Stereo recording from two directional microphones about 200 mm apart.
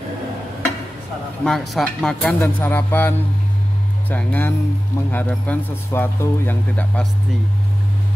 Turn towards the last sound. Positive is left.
turn(degrees=10)  # may be behind; listen again after turning